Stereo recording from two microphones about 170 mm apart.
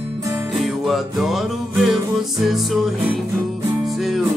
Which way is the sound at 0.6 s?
Centre (ahead or behind).